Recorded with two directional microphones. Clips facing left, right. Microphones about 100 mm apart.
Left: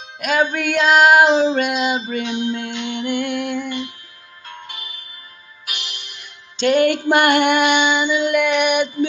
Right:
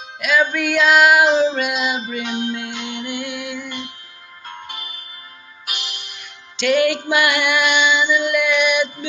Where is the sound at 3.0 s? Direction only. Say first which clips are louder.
Left 8 dB; 55° left (ahead or behind).